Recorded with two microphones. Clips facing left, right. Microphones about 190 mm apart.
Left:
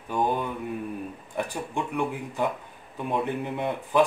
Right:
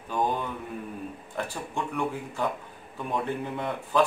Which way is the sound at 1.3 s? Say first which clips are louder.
Left 3 dB; 15° left (ahead or behind).